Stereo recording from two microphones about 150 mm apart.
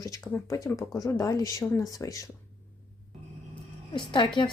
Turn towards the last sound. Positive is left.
turn(degrees=30)  # may be behind; listen again after turning